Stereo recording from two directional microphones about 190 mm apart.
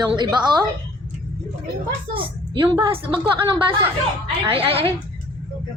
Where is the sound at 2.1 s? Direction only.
25° right (ahead or behind).